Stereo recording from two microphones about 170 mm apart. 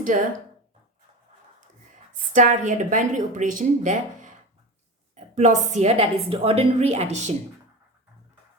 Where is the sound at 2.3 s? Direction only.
50° right (ahead or behind).